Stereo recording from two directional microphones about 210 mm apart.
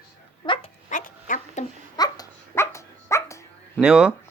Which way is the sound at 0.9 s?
40° left (ahead or behind).